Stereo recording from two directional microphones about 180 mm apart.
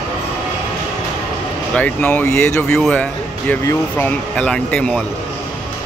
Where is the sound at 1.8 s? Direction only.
10° left (ahead or behind).